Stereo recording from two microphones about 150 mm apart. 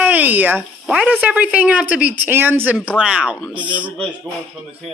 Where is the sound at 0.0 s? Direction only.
10° right (ahead or behind).